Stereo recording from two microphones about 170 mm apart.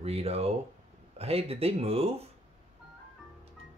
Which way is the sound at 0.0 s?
35° right (ahead or behind).